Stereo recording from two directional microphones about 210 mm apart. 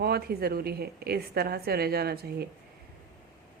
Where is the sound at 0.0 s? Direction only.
50° right (ahead or behind).